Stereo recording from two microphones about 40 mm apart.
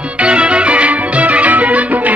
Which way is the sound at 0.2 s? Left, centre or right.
Right.